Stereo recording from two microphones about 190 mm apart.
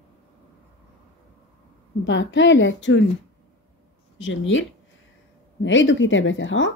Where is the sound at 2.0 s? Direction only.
75° left (ahead or behind).